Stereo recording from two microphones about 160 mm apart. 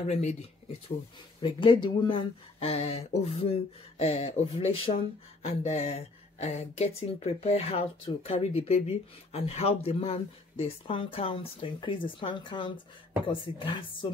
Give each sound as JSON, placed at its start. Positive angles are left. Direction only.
{"t": 0.0, "sound": "speech", "side_deg": 45}